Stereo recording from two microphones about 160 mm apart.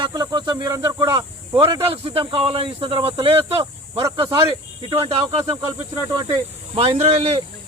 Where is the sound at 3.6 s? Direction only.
20° right (ahead or behind).